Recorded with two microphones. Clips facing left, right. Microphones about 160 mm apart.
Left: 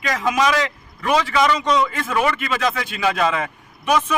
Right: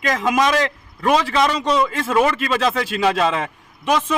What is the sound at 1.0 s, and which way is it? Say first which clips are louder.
A man's voice: right 1 dB; 30° right (ahead or behind).